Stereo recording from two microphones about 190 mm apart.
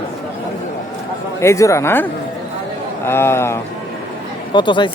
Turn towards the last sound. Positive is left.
turn(degrees=25)  # may be behind; listen again after turning